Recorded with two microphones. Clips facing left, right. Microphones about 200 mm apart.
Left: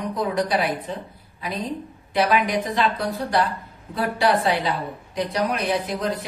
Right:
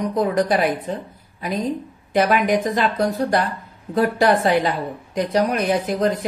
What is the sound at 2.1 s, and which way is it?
A woman's voice, 50° right (ahead or behind).